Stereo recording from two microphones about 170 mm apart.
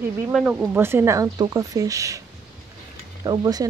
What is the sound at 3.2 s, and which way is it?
Speech, 25° right (ahead or behind).